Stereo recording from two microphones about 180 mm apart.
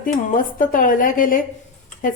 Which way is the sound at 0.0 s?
50° left (ahead or behind).